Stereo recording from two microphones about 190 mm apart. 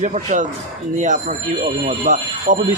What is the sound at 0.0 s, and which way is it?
Speech, 40° right (ahead or behind).